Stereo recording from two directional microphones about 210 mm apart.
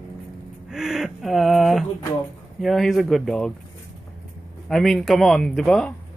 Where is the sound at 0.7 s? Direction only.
Centre (ahead or behind).